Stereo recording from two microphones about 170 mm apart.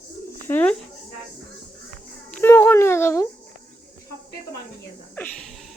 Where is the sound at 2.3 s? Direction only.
10° left (ahead or behind).